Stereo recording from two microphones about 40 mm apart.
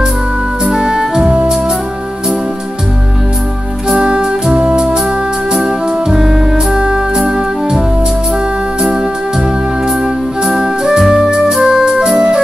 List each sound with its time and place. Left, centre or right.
0.7 s music: centre
3.9 s music: right
10.4 s music: centre
11.6 s organ: centre